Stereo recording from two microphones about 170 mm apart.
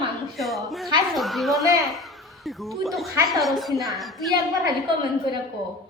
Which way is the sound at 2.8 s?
Centre (ahead or behind).